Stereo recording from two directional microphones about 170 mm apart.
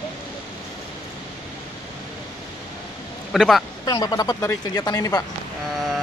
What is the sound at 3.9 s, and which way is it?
Speech, 20° left (ahead or behind).